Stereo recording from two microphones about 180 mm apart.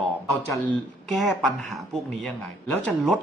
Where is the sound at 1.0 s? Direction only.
Centre (ahead or behind).